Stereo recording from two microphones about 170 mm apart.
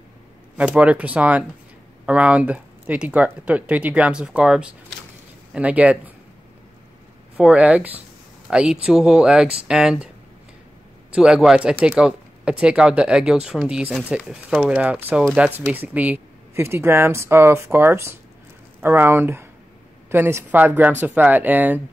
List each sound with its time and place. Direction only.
0.6 s speech: 10° right (ahead or behind)
7.3 s speech: 5° right (ahead or behind)
11.1 s speech: 5° right (ahead or behind)